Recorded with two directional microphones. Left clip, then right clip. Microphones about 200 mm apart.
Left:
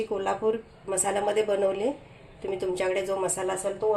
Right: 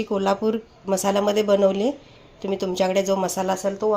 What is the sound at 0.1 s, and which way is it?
A woman's voice, 45° right (ahead or behind).